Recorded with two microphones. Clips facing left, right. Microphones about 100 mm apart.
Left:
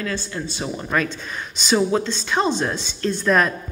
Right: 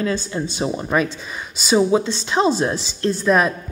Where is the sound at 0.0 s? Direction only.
20° right (ahead or behind).